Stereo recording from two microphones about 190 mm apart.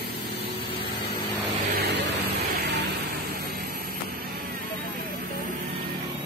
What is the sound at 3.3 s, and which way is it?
Vehicle, 50° right (ahead or behind).